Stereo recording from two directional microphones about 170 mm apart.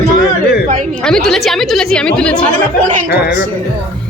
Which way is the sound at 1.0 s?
5° left (ahead or behind).